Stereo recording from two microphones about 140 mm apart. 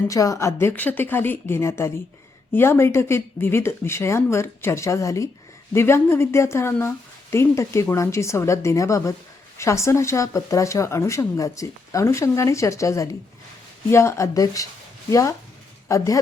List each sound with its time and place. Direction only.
0.1 s a woman's voice: 25° left (ahead or behind)